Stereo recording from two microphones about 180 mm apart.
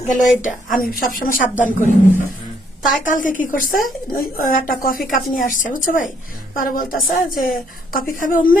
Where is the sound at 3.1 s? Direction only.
45° left (ahead or behind).